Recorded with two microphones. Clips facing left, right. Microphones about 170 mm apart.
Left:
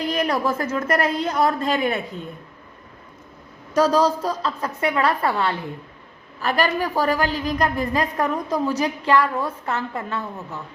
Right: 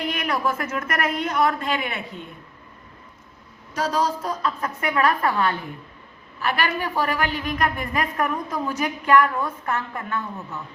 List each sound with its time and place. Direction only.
0.0 s a woman's voice: 35° left (ahead or behind)
3.8 s a woman's voice: 40° left (ahead or behind)
6.4 s a woman's voice: 40° left (ahead or behind); by 10.2 s 25° left (ahead or behind)